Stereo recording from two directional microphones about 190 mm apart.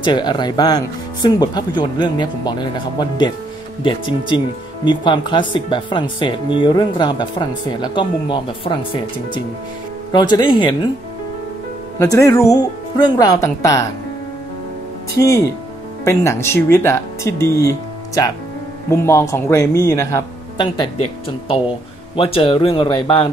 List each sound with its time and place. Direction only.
0.0 s speech: 25° left (ahead or behind)
10.1 s speech: 25° left (ahead or behind)
12.0 s speech: 15° left (ahead or behind)
15.1 s speech: 15° left (ahead or behind)
20.6 s speech: 30° left (ahead or behind)